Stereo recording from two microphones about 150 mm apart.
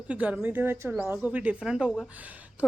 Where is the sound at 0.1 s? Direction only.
10° right (ahead or behind).